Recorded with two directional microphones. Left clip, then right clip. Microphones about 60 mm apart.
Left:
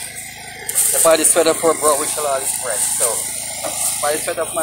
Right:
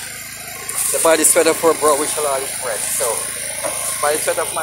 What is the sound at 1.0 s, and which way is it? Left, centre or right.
Speech, right.